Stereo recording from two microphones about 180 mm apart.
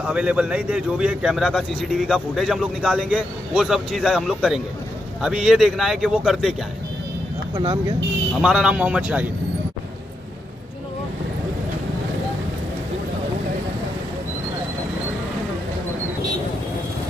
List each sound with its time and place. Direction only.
0.0 s speech: 5° right (ahead or behind)
7.5 s speech: 20° right (ahead or behind)
8.4 s a man's voice: 5° right (ahead or behind)